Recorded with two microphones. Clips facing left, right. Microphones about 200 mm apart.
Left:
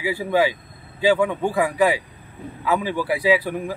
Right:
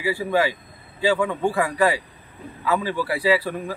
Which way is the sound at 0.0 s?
15° left (ahead or behind).